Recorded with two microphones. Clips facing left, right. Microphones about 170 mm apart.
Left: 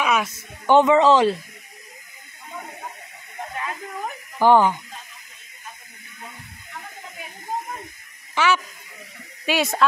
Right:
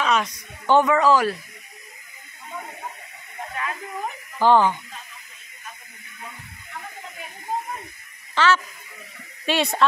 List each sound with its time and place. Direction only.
0.0 s a sound: 10° left (ahead or behind)
0.3 s speech: 20° left (ahead or behind)
4.4 s speech: 15° left (ahead or behind)
8.4 s speech: 10° left (ahead or behind)